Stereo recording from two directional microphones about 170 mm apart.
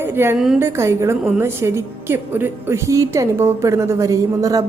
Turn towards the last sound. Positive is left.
turn(degrees=-20)  # may be behind; listen again after turning